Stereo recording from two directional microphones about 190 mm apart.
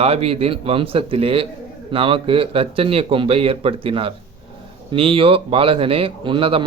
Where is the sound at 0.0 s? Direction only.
30° right (ahead or behind).